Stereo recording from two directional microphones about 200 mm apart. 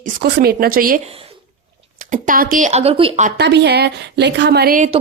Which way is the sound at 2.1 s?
40° right (ahead or behind).